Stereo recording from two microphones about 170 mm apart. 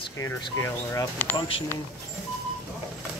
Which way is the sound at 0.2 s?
15° left (ahead or behind).